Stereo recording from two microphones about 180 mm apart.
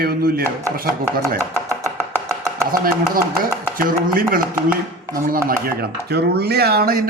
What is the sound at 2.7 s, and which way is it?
Speech, 55° right (ahead or behind).